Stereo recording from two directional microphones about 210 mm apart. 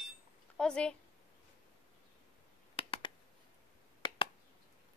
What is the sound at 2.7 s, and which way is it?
Finger snapping, 25° left (ahead or behind).